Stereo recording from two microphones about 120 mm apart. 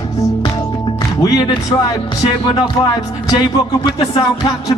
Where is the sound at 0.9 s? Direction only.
30° left (ahead or behind).